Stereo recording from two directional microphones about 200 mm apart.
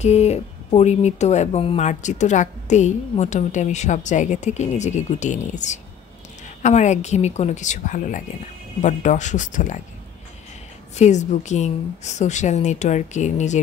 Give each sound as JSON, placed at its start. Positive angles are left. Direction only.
{"t": 0.0, "sound": "a woman's voice", "side_deg": 35}
{"t": 11.0, "sound": "a woman's voice", "side_deg": 35}